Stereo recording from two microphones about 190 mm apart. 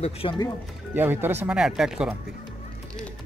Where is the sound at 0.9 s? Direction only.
10° right (ahead or behind).